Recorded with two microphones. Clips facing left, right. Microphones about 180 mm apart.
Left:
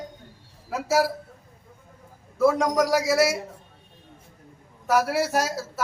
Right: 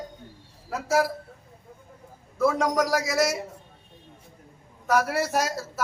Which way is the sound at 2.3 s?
Centre (ahead or behind).